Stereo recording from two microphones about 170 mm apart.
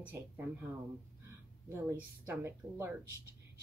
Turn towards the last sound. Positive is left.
turn(degrees=-15)  # may be behind; listen again after turning